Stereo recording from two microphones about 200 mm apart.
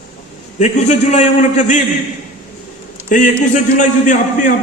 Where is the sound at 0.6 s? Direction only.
35° left (ahead or behind).